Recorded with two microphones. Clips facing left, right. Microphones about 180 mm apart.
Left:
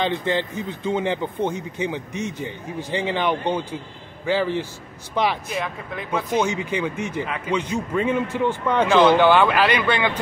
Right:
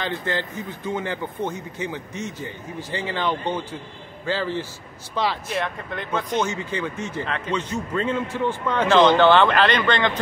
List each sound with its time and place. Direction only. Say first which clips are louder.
0.0 s a man's voice: left 4 dB; 20° left (ahead or behind)
5.5 s speech: right 1 dB; centre (ahead or behind)
6.4 s a man's voice: left 3 dB; 15° left (ahead or behind)